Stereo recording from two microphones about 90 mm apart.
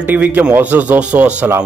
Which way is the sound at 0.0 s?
20° right (ahead or behind).